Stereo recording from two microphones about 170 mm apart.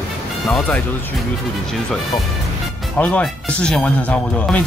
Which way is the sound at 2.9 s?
10° left (ahead or behind).